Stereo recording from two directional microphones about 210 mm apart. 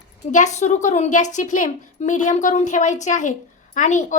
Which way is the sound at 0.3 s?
35° left (ahead or behind).